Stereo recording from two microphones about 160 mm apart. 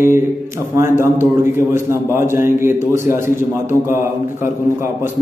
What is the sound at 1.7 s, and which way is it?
Speech, 15° right (ahead or behind).